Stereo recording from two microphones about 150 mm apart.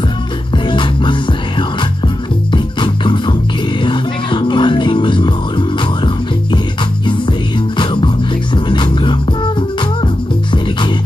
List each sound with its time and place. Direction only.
0.7 s music: 35° left (ahead or behind)
2.5 s music: 30° left (ahead or behind)
7.7 s music: 35° left (ahead or behind)